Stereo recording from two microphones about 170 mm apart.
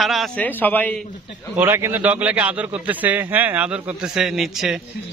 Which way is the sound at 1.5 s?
15° right (ahead or behind).